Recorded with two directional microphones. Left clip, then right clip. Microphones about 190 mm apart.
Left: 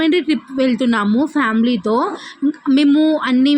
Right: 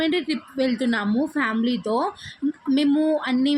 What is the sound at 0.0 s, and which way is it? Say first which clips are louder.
Speech: left 7 dB; 30° left (ahead or behind).